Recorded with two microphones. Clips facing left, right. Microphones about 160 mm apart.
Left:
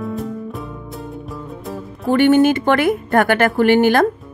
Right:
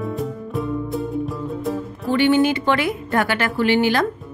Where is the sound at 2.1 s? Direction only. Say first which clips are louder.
Left 4 dB; 50° left (ahead or behind).